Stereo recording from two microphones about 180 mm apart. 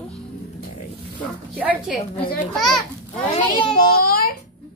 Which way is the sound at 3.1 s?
30° left (ahead or behind).